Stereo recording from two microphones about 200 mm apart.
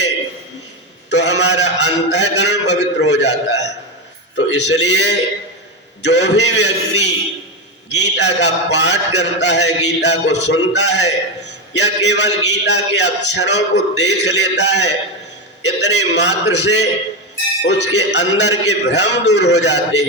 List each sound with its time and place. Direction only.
1.1 s a man's voice: 60° left (ahead or behind)